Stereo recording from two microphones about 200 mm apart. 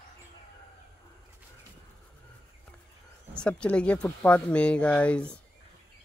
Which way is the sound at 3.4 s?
5° left (ahead or behind).